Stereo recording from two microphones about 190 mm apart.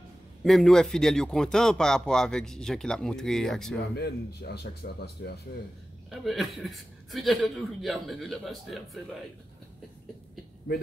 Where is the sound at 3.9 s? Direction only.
55° left (ahead or behind).